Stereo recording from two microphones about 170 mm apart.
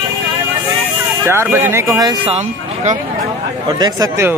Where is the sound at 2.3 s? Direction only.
40° right (ahead or behind).